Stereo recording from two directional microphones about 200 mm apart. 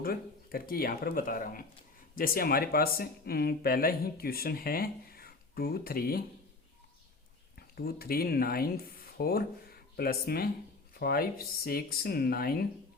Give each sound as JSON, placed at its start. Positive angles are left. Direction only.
{"t": 0.0, "sound": "speech", "side_deg": 50}
{"t": 7.8, "sound": "speech", "side_deg": 50}